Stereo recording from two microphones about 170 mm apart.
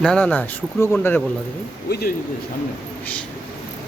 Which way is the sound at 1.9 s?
65° left (ahead or behind).